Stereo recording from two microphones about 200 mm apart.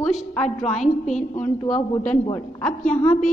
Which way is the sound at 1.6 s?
20° left (ahead or behind).